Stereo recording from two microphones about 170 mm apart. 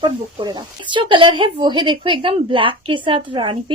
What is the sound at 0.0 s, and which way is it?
Speech, 25° right (ahead or behind).